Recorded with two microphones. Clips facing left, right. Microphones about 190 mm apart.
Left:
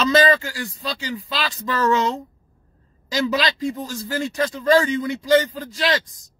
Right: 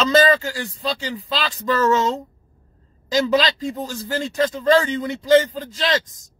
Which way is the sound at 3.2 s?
25° right (ahead or behind).